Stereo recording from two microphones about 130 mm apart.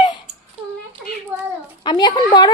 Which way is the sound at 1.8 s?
30° left (ahead or behind).